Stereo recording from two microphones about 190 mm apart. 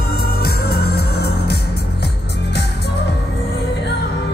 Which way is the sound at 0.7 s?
55° left (ahead or behind).